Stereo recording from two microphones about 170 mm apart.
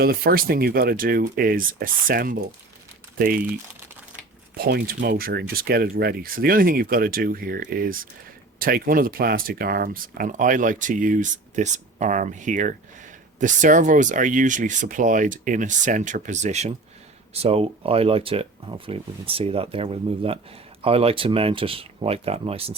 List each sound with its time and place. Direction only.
0.0 s speech: 60° right (ahead or behind)
4.5 s speech: 60° right (ahead or behind); by 22.7 s 35° right (ahead or behind)